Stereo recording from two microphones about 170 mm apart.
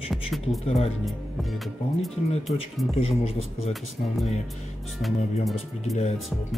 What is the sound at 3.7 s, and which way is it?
Speech, centre (ahead or behind).